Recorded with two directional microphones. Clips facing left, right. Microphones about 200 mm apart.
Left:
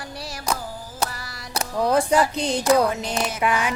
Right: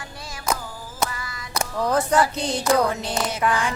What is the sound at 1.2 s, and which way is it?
Music, 40° left (ahead or behind).